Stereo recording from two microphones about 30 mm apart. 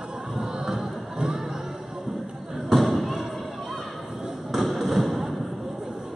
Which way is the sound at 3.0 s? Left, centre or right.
Centre.